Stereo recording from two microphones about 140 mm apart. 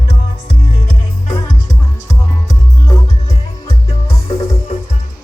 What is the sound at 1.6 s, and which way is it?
Music, 25° left (ahead or behind).